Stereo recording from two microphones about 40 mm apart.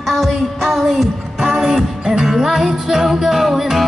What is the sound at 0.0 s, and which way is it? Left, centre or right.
Music, centre.